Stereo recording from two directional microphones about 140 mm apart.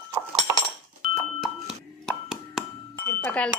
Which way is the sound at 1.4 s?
5° right (ahead or behind).